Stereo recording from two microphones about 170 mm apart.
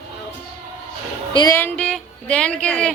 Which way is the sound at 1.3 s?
25° left (ahead or behind).